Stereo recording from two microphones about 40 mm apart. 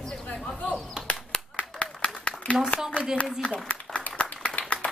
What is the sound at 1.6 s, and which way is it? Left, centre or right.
Clapping, left.